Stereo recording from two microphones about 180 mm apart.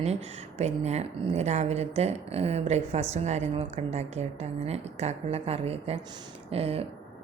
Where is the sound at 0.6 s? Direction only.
40° right (ahead or behind).